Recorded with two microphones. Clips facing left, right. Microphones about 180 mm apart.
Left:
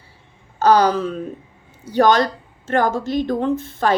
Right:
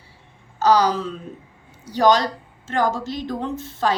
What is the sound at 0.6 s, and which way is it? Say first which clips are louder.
A woman's voice: left 3 dB; 55° left (ahead or behind).